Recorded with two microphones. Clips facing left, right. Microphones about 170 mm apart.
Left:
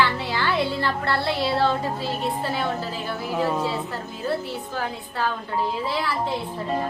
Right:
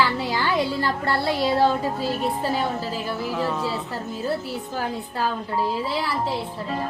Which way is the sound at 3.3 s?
15° left (ahead or behind).